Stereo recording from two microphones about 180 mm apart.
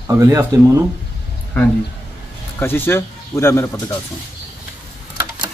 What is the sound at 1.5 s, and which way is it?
Speech, 10° left (ahead or behind).